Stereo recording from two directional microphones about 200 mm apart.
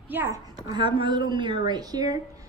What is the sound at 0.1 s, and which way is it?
A woman's voice, 15° right (ahead or behind).